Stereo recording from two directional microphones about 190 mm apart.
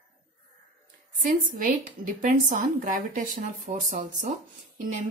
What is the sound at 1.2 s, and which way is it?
A woman's voice, 45° right (ahead or behind).